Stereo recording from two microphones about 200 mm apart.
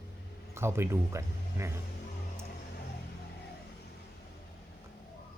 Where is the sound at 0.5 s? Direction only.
15° right (ahead or behind).